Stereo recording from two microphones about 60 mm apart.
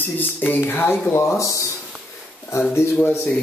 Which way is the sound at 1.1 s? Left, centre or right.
Left.